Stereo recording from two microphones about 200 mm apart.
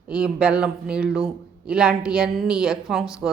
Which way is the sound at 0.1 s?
5° right (ahead or behind).